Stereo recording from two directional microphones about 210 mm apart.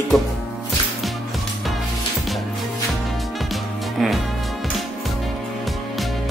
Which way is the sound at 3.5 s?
Centre (ahead or behind).